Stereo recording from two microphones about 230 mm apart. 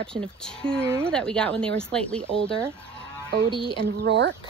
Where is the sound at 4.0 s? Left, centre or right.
Right.